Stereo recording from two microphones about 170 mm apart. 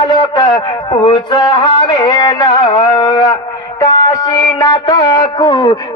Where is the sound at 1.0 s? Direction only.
25° left (ahead or behind).